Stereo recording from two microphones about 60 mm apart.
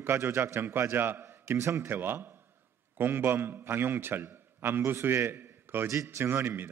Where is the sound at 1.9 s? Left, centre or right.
Right.